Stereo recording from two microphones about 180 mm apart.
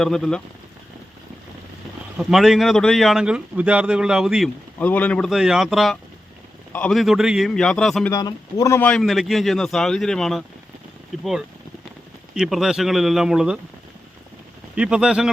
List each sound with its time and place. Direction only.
0.0 s a man's voice: centre (ahead or behind)
2.1 s a man's voice: centre (ahead or behind)
4.8 s a man's voice: 10° left (ahead or behind)
8.1 s a man's voice: 20° left (ahead or behind); by 13.6 s 5° right (ahead or behind)
14.8 s a man's voice: 5° right (ahead or behind)